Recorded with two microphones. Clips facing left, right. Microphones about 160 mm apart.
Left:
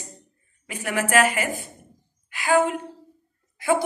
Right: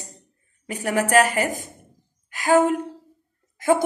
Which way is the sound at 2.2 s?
40° right (ahead or behind).